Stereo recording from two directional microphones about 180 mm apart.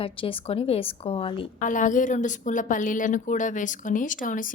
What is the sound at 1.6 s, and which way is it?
Speech, 45° left (ahead or behind).